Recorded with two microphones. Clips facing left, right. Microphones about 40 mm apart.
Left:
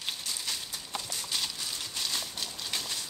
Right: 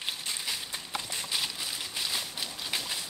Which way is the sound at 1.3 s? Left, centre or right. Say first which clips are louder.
Right 1 dB; centre.